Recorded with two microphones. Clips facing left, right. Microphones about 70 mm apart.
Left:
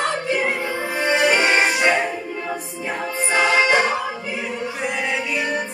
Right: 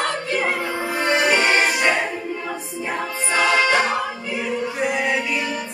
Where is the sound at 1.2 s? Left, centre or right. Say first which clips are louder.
Left 2 dB; right.